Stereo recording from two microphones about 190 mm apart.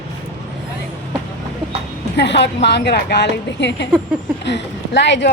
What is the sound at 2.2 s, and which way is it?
A woman's voice, 65° left (ahead or behind).